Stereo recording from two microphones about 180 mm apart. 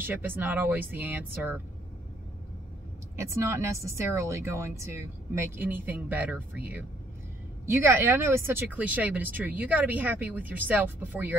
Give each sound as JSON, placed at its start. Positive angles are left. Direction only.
{"t": 0.0, "sound": "speech", "side_deg": -10}
{"t": 3.2, "sound": "speech", "side_deg": -15}